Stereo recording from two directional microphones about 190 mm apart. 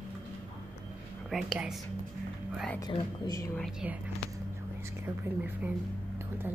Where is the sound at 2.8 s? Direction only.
20° left (ahead or behind).